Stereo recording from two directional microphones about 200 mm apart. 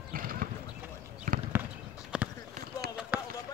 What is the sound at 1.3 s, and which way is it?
Basketball bounce, 45° right (ahead or behind).